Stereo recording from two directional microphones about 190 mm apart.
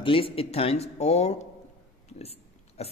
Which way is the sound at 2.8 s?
35° left (ahead or behind).